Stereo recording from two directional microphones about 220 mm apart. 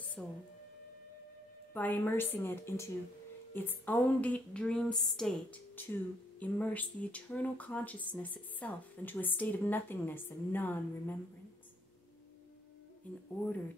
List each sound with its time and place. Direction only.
0.2 s speech: 5° left (ahead or behind)
1.7 s a woman's voice: 10° left (ahead or behind)